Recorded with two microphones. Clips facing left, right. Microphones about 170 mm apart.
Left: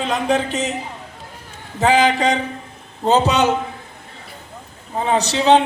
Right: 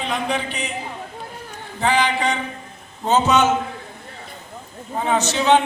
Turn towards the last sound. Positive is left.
turn(degrees=35)  # may be behind; listen again after turning